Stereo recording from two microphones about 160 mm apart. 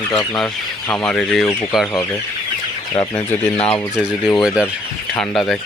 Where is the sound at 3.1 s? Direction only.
10° left (ahead or behind).